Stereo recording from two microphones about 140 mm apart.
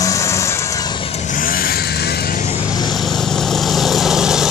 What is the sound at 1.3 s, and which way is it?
Vehicle, 90° left.